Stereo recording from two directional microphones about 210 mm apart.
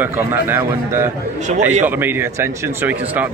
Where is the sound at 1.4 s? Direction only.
35° right (ahead or behind).